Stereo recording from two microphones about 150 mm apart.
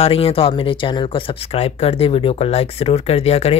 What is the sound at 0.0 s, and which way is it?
Speech, 40° left (ahead or behind).